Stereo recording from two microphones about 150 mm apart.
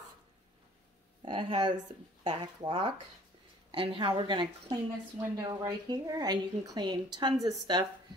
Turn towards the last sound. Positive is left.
turn(degrees=-30)  # may be behind; listen again after turning